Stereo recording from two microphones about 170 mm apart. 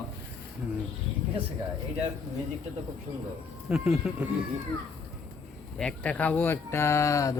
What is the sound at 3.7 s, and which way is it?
Speech, 5° right (ahead or behind).